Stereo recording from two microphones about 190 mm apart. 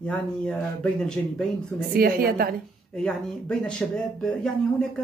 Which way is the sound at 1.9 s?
55° right (ahead or behind).